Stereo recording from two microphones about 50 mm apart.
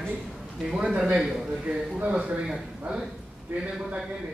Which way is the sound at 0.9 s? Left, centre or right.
Right.